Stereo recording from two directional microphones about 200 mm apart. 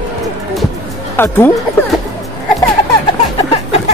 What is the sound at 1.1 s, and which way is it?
Speech, 10° left (ahead or behind).